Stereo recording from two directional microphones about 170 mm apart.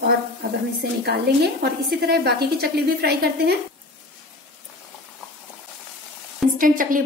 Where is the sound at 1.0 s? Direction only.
70° right (ahead or behind).